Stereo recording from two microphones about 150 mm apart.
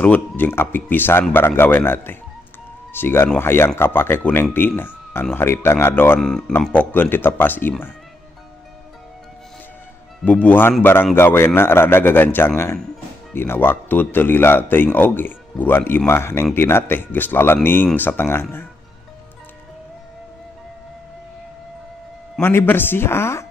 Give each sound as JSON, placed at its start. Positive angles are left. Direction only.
{"t": 0.0, "sound": "a man's voice", "side_deg": 10}
{"t": 10.2, "sound": "a man's voice", "side_deg": 10}
{"t": 22.4, "sound": "a man's voice", "side_deg": 15}